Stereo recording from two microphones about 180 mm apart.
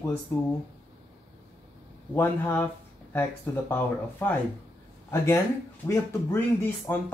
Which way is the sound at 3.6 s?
10° left (ahead or behind).